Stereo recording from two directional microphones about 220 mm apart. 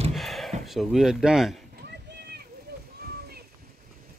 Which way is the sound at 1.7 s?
50° right (ahead or behind).